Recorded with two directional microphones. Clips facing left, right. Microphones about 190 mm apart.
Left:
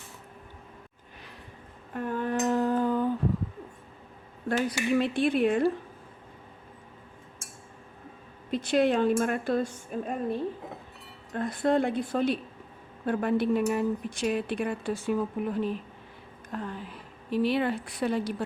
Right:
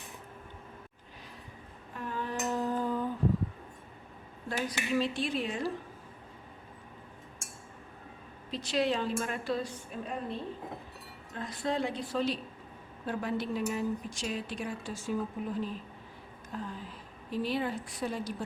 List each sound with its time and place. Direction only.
1.9 s humming: 55° left (ahead or behind)
4.4 s a woman's voice: 60° left (ahead or behind)
8.4 s a woman's voice: 55° left (ahead or behind)
11.3 s a woman's voice: 55° left (ahead or behind)